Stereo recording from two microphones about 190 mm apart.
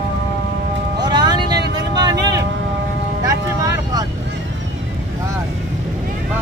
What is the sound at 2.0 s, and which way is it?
Vehicle, 20° right (ahead or behind).